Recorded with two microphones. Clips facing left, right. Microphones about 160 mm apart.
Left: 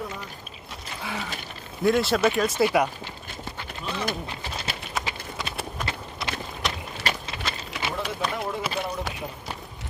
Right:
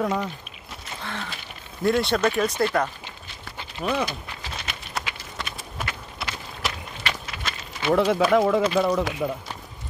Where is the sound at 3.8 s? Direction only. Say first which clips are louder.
Right 8 dB; 60° right (ahead or behind).